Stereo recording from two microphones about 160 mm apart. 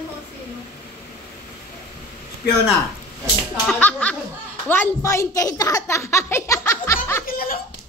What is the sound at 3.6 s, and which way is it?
A child's voice, 10° left (ahead or behind).